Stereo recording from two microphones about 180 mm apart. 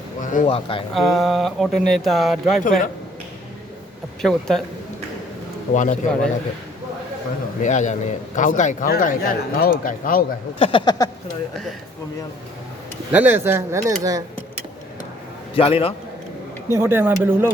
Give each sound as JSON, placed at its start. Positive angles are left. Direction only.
{"t": 0.2, "sound": "a sound", "side_deg": 45}
{"t": 0.4, "sound": "speech", "side_deg": 30}
{"t": 0.9, "sound": "speech", "side_deg": 0}
{"t": 4.2, "sound": "speech", "side_deg": 5}
{"t": 5.7, "sound": "speech", "side_deg": 45}
{"t": 7.6, "sound": "speech", "side_deg": 40}
{"t": 10.6, "sound": "speech", "side_deg": 30}
{"t": 13.1, "sound": "speech", "side_deg": -10}
{"t": 15.5, "sound": "speech", "side_deg": 30}
{"t": 16.6, "sound": "speech", "side_deg": -15}